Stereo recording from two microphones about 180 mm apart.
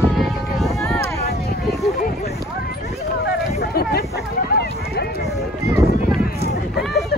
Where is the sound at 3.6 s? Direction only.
60° left (ahead or behind).